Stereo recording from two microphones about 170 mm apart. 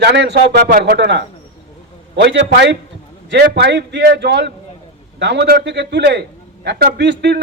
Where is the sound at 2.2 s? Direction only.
90° right.